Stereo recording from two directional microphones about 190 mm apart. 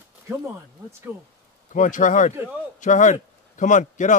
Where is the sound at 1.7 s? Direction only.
40° left (ahead or behind).